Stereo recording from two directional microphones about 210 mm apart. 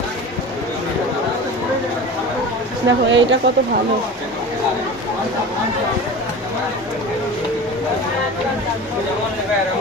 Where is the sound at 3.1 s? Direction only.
55° right (ahead or behind).